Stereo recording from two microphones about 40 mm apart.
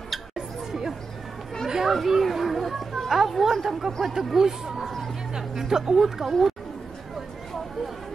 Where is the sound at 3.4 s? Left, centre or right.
Centre.